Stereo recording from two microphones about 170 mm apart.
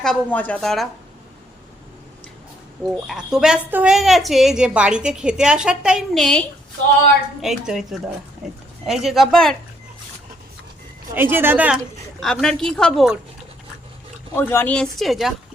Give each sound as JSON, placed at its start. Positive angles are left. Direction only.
{"t": 0.0, "sound": "a woman's voice", "side_deg": 5}
{"t": 3.1, "sound": "a woman's voice", "side_deg": -5}
{"t": 7.4, "sound": "a woman's voice", "side_deg": 0}
{"t": 11.1, "sound": "a woman's voice", "side_deg": -15}
{"t": 12.2, "sound": "a woman's voice", "side_deg": 5}
{"t": 14.3, "sound": "a woman's voice", "side_deg": 10}